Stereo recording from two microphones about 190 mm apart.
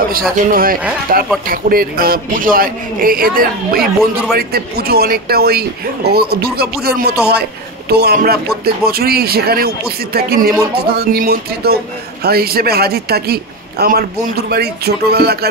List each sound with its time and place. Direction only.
0.5 s a man's voice: 50° right (ahead or behind)